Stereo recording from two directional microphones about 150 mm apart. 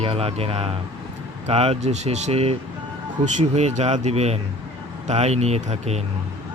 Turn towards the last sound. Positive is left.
turn(degrees=-45)  # may be behind; listen again after turning